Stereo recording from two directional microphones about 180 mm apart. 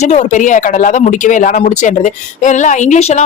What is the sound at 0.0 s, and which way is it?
Speech, 40° left (ahead or behind).